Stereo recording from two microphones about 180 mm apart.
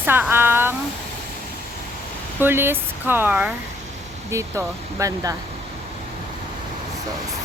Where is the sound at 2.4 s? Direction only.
10° right (ahead or behind).